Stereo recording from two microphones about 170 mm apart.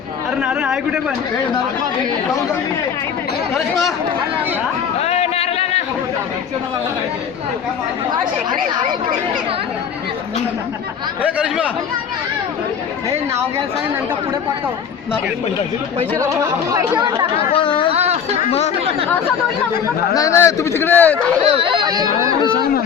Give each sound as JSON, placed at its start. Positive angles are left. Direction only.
{"t": 0.4, "sound": "speech", "side_deg": -5}
{"t": 4.9, "sound": "a sound", "side_deg": 40}
{"t": 8.2, "sound": "speech", "side_deg": -25}
{"t": 11.2, "sound": "speech", "side_deg": -5}
{"t": 16.1, "sound": "speech", "side_deg": -20}
{"t": 17.3, "sound": "speech", "side_deg": 35}
{"t": 17.9, "sound": "a sound", "side_deg": -40}
{"t": 20.1, "sound": "speech", "side_deg": 15}
{"t": 21.5, "sound": "speech", "side_deg": -30}